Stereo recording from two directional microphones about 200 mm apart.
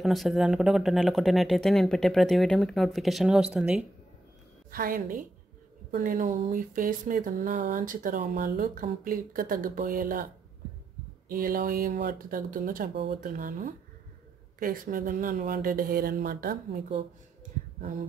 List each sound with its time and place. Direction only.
0.0 s speech: centre (ahead or behind)
4.6 s speech: 45° right (ahead or behind)
5.9 s a sound: 40° right (ahead or behind)
9.0 s speech: 45° right (ahead or behind)
13.4 s a sound: 40° right (ahead or behind)
14.6 s speech: 45° right (ahead or behind)